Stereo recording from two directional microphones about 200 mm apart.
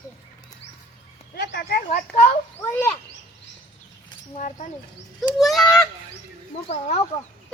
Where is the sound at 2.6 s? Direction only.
10° left (ahead or behind).